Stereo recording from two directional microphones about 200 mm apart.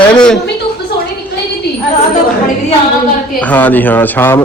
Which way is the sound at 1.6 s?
55° left (ahead or behind).